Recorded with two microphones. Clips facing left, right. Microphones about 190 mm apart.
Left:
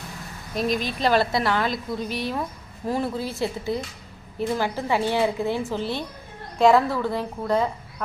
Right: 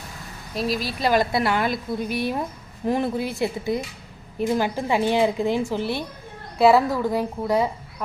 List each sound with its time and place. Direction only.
0.5 s a woman's voice: 5° right (ahead or behind)